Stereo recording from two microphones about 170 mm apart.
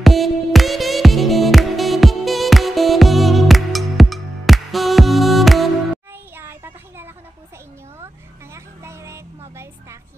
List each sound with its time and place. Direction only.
0.0 s music: centre (ahead or behind)
6.3 s child singing: 15° right (ahead or behind)
8.5 s music: 15° right (ahead or behind)